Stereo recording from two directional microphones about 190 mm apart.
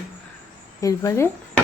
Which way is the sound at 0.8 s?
15° left (ahead or behind).